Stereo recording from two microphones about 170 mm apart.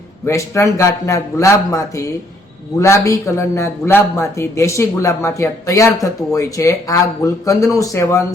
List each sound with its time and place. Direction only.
0.3 s speech: 15° left (ahead or behind)